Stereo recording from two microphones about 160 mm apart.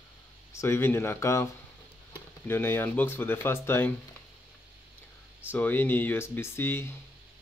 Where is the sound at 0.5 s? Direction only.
15° left (ahead or behind).